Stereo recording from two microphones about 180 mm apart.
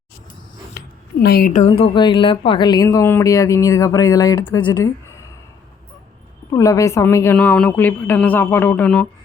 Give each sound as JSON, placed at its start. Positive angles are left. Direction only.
{"t": 1.2, "sound": "a woman's voice", "side_deg": 60}
{"t": 1.5, "sound": "speech", "side_deg": 30}
{"t": 6.5, "sound": "a woman's voice", "side_deg": 15}